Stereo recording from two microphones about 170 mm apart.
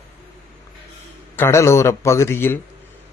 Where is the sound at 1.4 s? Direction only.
15° left (ahead or behind).